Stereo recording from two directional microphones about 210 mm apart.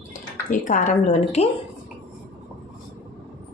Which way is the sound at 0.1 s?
40° left (ahead or behind).